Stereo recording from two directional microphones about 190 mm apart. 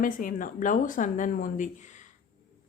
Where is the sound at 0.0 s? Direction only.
45° left (ahead or behind).